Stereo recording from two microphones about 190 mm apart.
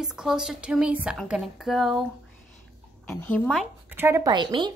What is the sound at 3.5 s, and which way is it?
Speech, 10° right (ahead or behind).